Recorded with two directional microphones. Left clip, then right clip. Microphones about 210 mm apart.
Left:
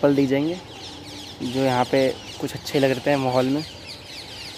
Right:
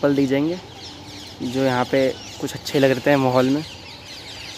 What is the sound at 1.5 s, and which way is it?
Speech, centre (ahead or behind).